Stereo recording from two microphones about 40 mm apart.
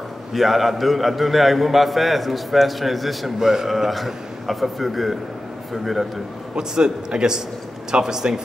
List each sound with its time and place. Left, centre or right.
0.3 s a man's voice: centre
6.5 s a man's voice: centre